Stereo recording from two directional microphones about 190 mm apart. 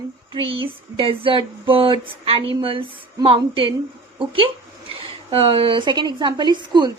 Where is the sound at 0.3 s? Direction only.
30° right (ahead or behind).